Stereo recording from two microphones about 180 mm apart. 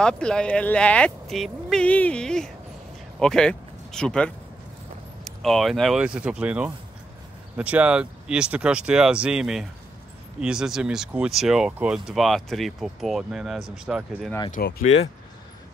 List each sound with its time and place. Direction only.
0.0 s speech: 5° left (ahead or behind)
14.6 s speech: 55° left (ahead or behind)